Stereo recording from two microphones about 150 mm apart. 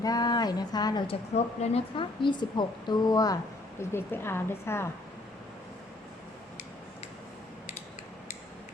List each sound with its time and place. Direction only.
0.0 s speech: 25° left (ahead or behind)
1.6 s a woman's voice: 40° left (ahead or behind); by 4.9 s 15° left (ahead or behind)